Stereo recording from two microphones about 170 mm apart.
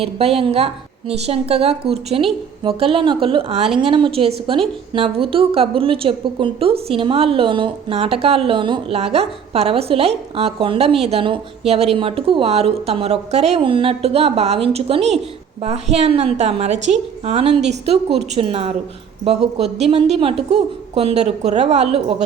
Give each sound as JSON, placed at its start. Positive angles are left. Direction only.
{"t": 0.0, "sound": "a woman's voice", "side_deg": -35}